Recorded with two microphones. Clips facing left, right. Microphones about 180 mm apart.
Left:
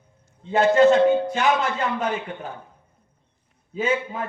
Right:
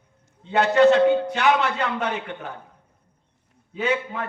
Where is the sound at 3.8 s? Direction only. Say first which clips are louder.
Left 1 dB; 65° right (ahead or behind).